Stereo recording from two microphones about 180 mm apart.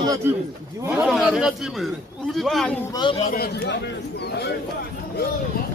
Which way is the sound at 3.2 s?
60° left (ahead or behind).